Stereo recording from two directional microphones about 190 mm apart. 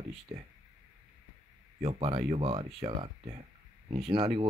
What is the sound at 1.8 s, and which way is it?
Speech, 30° right (ahead or behind).